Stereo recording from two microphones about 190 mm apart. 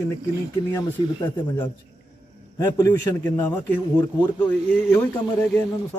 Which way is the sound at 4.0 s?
20° left (ahead or behind).